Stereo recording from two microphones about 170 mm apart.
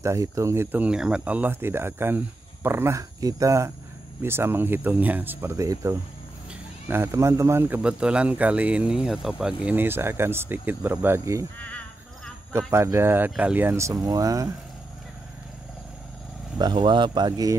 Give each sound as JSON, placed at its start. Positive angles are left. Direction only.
{"t": 0.0, "sound": "a man's voice", "side_deg": -20}
{"t": 12.7, "sound": "a man's voice", "side_deg": -15}
{"t": 16.5, "sound": "speech", "side_deg": -25}